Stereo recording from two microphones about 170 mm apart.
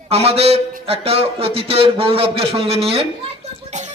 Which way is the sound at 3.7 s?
45° right (ahead or behind).